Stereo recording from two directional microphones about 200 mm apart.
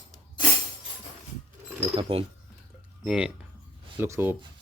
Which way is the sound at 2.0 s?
25° right (ahead or behind).